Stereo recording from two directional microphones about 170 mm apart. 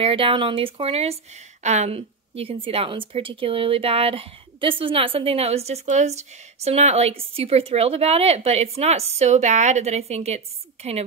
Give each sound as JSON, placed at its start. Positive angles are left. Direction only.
{"t": 0.0, "sound": "speech", "side_deg": -30}